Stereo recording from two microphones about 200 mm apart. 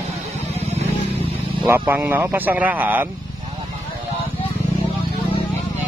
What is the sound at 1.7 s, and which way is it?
Speech, 10° right (ahead or behind).